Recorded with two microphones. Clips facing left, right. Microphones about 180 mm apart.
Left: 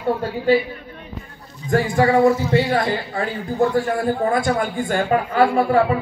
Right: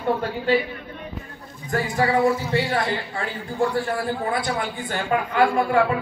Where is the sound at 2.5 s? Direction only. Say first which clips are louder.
Left 4 dB; 45° left (ahead or behind).